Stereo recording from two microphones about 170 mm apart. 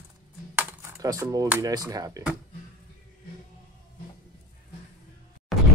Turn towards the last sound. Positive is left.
turn(degrees=0)  # may be behind; listen again after turning